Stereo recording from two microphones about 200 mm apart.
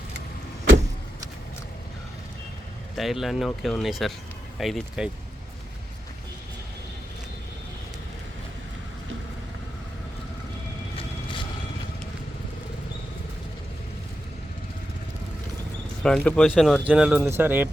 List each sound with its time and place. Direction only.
3.0 s speech: centre (ahead or behind)
10.9 s vehicle: 25° left (ahead or behind)
16.0 s speech: 5° left (ahead or behind)